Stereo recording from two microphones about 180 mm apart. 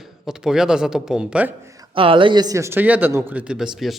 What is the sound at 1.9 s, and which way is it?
Speech, 30° right (ahead or behind).